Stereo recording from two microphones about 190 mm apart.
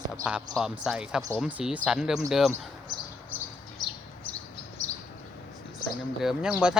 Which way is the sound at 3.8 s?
20° left (ahead or behind).